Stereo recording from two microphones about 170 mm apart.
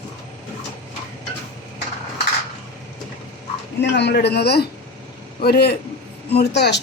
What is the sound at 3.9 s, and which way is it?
A woman's voice, 85° left.